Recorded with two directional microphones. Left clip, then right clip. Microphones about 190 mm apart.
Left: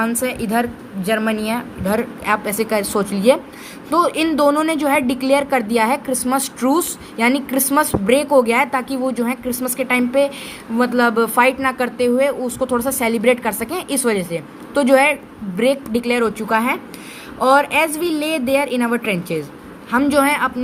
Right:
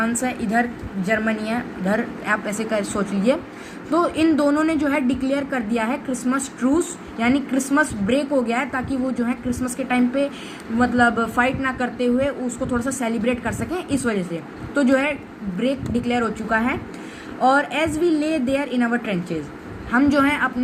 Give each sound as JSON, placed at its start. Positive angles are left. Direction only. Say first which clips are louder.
{"t": 0.0, "sound": "a woman's voice", "louder": "left 3 dB", "side_deg": 40}